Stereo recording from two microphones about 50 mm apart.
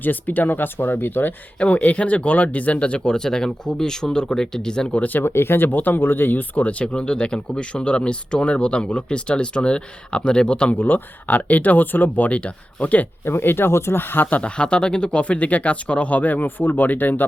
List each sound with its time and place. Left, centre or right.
0.0 s speech: left
1.5 s speech: left
3.2 s speech: centre
4.9 s speech: left
5.2 s speech: left
6.8 s speech: centre
10.8 s speech: left
13.2 s speech: left
14.3 s speech: left